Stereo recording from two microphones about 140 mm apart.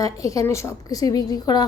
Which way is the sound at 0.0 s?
25° left (ahead or behind).